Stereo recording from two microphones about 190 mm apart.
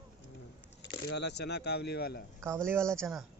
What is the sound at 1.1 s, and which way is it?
Speech, 65° left (ahead or behind).